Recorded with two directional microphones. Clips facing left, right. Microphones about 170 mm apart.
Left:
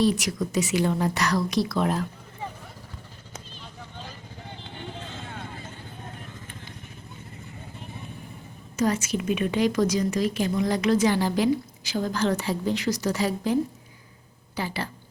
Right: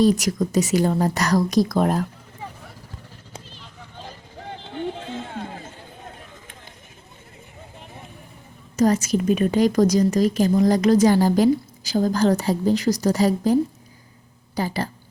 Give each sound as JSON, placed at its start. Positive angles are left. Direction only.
{"t": 0.0, "sound": "a woman's voice", "side_deg": -40}
{"t": 8.7, "sound": "a woman's voice", "side_deg": -40}